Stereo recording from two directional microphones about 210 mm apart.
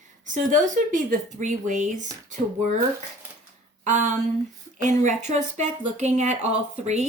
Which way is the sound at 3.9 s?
35° right (ahead or behind).